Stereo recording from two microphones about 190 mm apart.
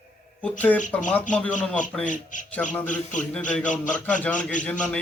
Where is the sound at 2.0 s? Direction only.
40° left (ahead or behind).